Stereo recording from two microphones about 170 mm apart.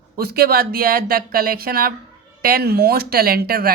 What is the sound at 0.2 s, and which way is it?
Speech, 65° right (ahead or behind).